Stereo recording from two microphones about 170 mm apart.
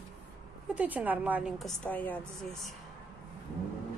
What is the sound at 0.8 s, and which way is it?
Speech, 10° right (ahead or behind).